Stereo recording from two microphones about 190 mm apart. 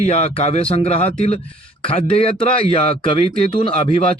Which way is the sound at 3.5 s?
30° left (ahead or behind).